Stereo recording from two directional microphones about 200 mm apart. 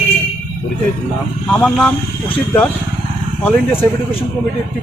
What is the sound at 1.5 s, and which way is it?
Speech, 5° left (ahead or behind).